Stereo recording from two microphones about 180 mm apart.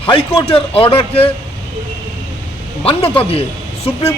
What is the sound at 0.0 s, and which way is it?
A man's voice, 30° left (ahead or behind).